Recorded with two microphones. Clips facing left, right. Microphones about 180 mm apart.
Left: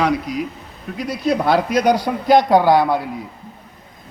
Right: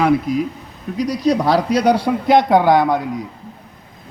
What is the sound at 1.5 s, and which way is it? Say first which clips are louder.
A man's voice: left 1 dB; 35° right (ahead or behind).